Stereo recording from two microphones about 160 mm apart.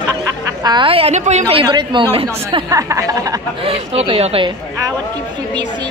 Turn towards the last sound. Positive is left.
turn(degrees=-35)  # may be behind; listen again after turning